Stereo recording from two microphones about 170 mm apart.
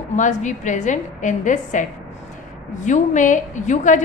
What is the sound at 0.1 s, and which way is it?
A woman's voice, 45° left (ahead or behind).